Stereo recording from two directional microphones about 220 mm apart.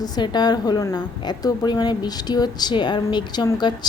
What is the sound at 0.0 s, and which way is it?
Speech, 20° left (ahead or behind).